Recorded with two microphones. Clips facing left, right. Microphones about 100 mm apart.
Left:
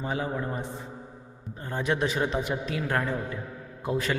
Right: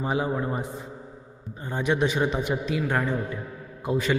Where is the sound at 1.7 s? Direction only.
Centre (ahead or behind).